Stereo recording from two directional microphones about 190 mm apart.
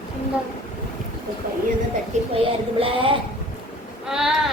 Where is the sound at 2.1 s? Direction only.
40° right (ahead or behind).